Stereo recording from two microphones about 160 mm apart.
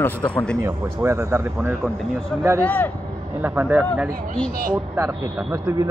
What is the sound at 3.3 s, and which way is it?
A man's voice, 15° right (ahead or behind).